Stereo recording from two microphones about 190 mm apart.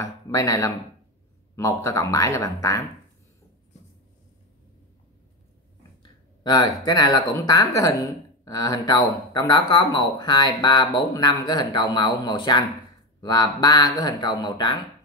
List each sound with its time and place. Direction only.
0.0 s speech: 15° left (ahead or behind)
6.4 s speech: 20° left (ahead or behind)